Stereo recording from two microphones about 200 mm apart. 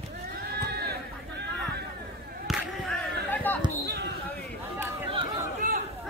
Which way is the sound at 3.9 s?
55° right (ahead or behind).